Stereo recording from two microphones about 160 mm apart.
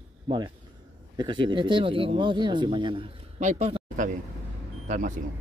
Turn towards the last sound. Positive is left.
turn(degrees=-50)  # may be behind; listen again after turning